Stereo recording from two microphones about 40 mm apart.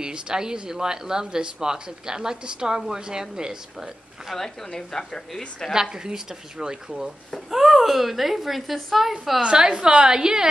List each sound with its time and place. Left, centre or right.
0.0 s a woman's voice: centre
4.3 s a woman's voice: centre
4.6 s speech: centre
5.7 s a woman's voice: centre
7.5 s a woman's voice: centre
9.4 s a woman's voice: right